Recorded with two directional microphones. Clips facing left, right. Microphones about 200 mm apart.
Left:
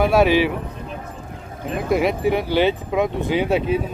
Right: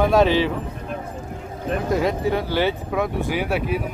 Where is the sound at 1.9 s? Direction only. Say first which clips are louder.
Left 3 dB; 15° left (ahead or behind).